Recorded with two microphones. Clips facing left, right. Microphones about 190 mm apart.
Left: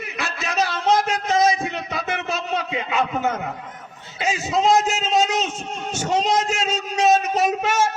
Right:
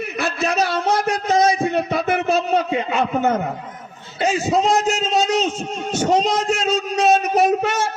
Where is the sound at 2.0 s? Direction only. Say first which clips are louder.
Right 7 dB; 35° right (ahead or behind).